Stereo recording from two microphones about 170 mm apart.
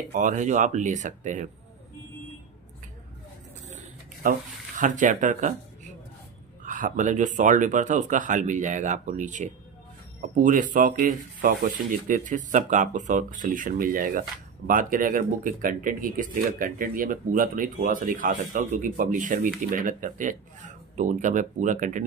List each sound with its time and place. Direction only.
0.1 s speech: 50° right (ahead or behind)
3.6 s a sound: 50° right (ahead or behind)
6.6 s speech: 50° right (ahead or behind)